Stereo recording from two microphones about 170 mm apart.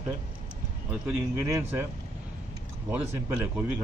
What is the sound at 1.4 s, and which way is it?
Speech, 20° right (ahead or behind).